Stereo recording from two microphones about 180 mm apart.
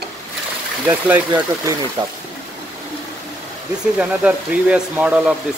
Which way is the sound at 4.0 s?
5° right (ahead or behind).